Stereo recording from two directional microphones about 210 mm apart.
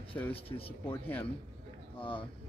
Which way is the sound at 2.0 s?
25° left (ahead or behind).